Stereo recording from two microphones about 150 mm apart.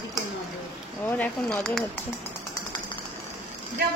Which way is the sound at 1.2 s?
5° left (ahead or behind).